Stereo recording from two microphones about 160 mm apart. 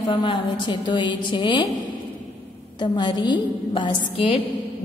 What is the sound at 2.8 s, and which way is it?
A woman's voice, 30° left (ahead or behind).